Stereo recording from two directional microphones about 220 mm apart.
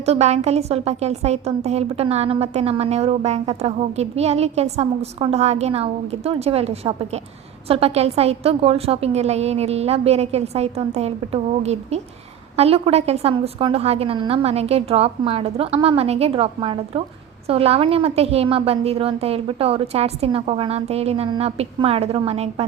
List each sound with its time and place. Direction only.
0.0 s a woman's voice: 30° right (ahead or behind)